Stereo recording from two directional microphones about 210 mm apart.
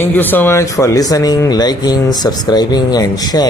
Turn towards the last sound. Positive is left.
turn(degrees=20)  # may be behind; listen again after turning